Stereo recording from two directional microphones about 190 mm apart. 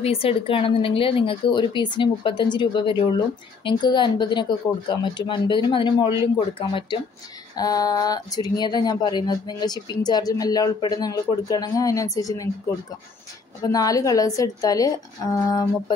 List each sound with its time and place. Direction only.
0.0 s speech: 30° left (ahead or behind)
13.6 s speech: 20° left (ahead or behind)